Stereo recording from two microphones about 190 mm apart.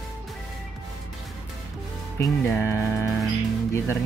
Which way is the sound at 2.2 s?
15° left (ahead or behind).